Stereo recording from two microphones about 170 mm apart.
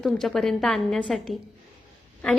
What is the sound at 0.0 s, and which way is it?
A woman's voice, centre (ahead or behind).